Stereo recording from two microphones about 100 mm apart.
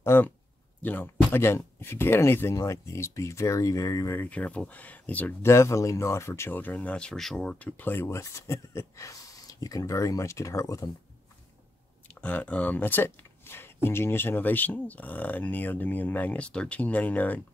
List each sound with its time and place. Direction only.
0.0 s speech: 25° left (ahead or behind)
4.2 s speech: 15° left (ahead or behind)
5.5 s speech: 30° left (ahead or behind)
12.1 s speech: 15° left (ahead or behind)